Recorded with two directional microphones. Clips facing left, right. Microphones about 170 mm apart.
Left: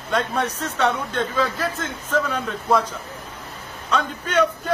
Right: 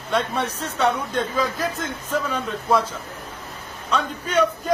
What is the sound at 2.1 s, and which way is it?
Speech, 10° right (ahead or behind).